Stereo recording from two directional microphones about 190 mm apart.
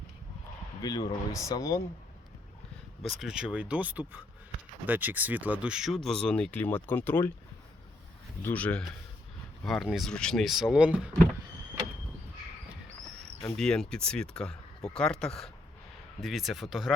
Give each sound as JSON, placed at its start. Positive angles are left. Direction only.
{"t": 0.8, "sound": "speech", "side_deg": 20}
{"t": 3.0, "sound": "speech", "side_deg": 0}
{"t": 8.4, "sound": "speech", "side_deg": 5}
{"t": 13.6, "sound": "speech", "side_deg": 5}